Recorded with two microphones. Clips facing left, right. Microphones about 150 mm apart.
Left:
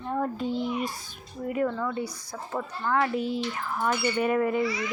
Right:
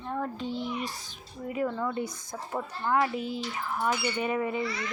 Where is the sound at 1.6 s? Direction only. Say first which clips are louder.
Left 2 dB; 20° right (ahead or behind).